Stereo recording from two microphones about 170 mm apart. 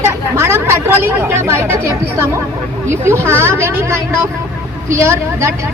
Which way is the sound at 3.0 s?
15° right (ahead or behind).